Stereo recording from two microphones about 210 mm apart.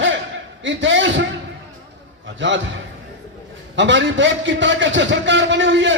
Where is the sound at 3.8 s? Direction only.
60° right (ahead or behind).